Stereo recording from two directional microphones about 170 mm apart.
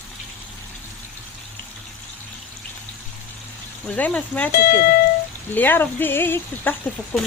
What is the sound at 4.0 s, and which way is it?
Speech, 10° left (ahead or behind).